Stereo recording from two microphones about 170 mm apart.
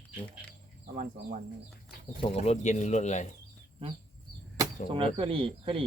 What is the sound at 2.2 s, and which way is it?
Speech, 35° left (ahead or behind).